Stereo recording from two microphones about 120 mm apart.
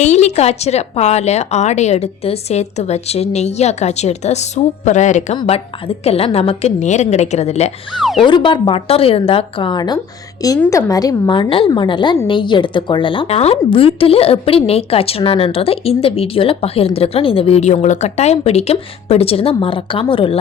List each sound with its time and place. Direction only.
0.0 s a woman's voice: 65° left (ahead or behind); by 5.4 s 85° left
6.1 s a woman's voice: 55° left (ahead or behind)
8.2 s a woman's voice: 40° left (ahead or behind)
13.2 s a woman's voice: 60° left (ahead or behind)